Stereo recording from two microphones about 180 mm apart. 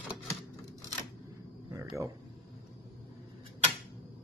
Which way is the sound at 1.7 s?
15° right (ahead or behind).